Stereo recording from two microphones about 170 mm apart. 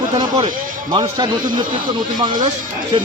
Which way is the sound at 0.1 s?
30° right (ahead or behind).